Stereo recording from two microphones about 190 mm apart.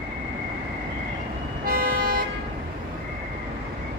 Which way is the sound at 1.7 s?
50° right (ahead or behind).